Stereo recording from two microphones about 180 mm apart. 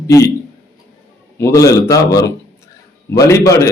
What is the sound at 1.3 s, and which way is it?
A man's voice, 15° left (ahead or behind).